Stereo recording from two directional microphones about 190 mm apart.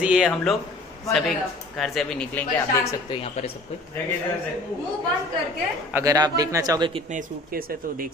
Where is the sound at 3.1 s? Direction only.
30° left (ahead or behind).